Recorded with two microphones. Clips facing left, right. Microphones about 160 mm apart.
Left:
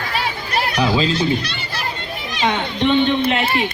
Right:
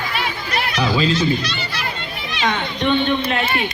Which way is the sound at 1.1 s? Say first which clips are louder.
Even; 55° left (ahead or behind).